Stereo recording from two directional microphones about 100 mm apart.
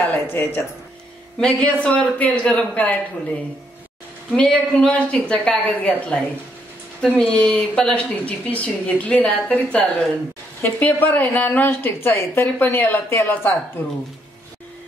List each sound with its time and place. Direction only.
0.0 s a woman's voice: 20° left (ahead or behind)
4.4 s a woman's voice: 10° left (ahead or behind)